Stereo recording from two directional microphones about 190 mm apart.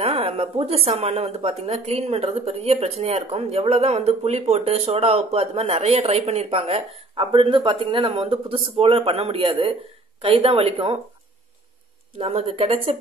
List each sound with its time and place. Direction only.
0.0 s a woman's voice: 30° right (ahead or behind)
12.2 s a woman's voice: 30° right (ahead or behind)